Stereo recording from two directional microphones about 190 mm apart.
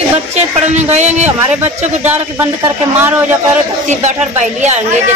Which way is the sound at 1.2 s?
10° right (ahead or behind).